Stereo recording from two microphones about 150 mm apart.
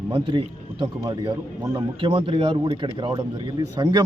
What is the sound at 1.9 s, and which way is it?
Speech, 35° right (ahead or behind).